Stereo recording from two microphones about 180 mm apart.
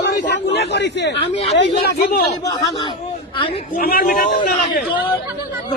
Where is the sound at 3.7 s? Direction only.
55° left (ahead or behind).